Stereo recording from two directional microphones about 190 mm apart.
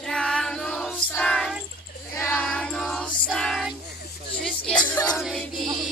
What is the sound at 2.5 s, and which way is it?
Choir, 5° left (ahead or behind).